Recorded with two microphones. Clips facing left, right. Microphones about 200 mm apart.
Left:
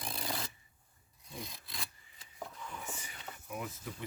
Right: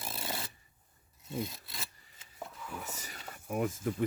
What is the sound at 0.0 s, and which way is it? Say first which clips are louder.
Rub: even; 5° right (ahead or behind).